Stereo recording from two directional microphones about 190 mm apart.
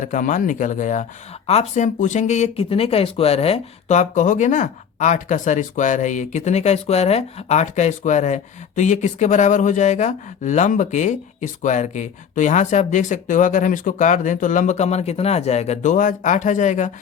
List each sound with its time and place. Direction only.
0.0 s speech: 45° left (ahead or behind)